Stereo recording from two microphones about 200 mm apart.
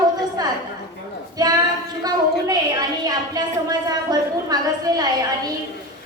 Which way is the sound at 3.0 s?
20° right (ahead or behind).